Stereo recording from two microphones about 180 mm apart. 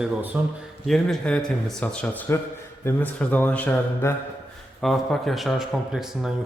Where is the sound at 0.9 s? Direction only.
Centre (ahead or behind).